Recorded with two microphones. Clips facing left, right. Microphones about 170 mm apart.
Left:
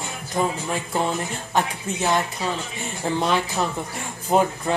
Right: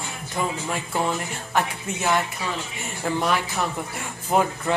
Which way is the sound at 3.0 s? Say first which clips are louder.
Left 1 dB; 25° left (ahead or behind).